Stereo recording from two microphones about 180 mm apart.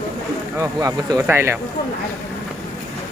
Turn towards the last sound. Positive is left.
turn(degrees=-15)  # may be behind; listen again after turning